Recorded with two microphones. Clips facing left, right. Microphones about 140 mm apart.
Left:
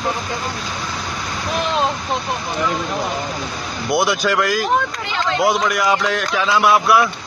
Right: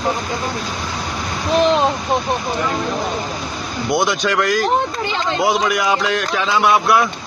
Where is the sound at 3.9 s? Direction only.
5° left (ahead or behind).